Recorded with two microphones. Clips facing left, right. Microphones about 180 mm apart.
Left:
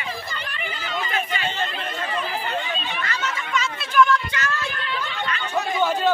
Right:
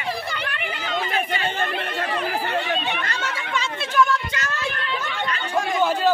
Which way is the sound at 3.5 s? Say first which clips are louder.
Left 2 dB; 25° right (ahead or behind).